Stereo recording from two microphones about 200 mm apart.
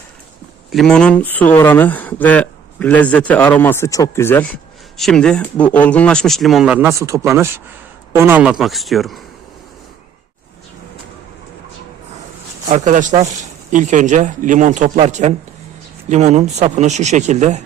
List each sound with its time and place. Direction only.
0.7 s speech: centre (ahead or behind)
12.6 s speech: 40° right (ahead or behind)